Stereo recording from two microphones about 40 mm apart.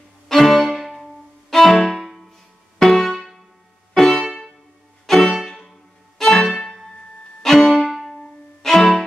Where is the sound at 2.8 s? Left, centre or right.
Centre.